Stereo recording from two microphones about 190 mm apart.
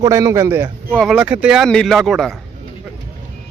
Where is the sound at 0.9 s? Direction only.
5° right (ahead or behind).